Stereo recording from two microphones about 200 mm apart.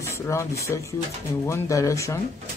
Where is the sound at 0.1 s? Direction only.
15° left (ahead or behind).